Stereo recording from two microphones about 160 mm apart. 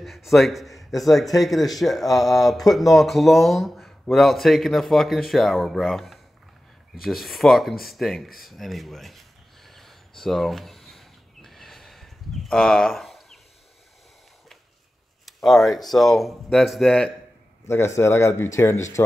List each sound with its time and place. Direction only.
0.0 s a man's voice: centre (ahead or behind)
9.7 s a sound: centre (ahead or behind)
15.2 s a man's voice: centre (ahead or behind)
17.6 s speech: 15° left (ahead or behind)